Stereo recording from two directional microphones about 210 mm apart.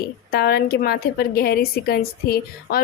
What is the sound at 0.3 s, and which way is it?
A woman's voice, 45° left (ahead or behind).